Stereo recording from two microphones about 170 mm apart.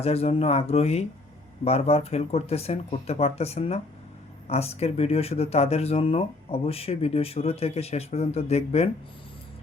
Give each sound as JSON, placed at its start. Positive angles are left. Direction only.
{"t": 0.0, "sound": "speech", "side_deg": 35}